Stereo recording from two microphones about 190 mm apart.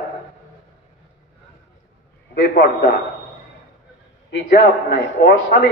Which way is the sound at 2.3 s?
60° left (ahead or behind).